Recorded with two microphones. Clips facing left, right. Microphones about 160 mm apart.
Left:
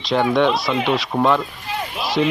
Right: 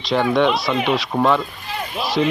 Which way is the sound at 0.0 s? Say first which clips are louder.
Even; centre (ahead or behind).